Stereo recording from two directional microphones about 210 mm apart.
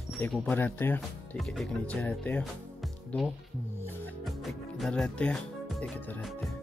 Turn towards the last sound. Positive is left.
turn(degrees=5)  # may be behind; listen again after turning